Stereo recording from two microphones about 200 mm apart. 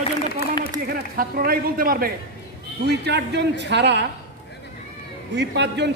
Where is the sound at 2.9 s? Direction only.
55° right (ahead or behind).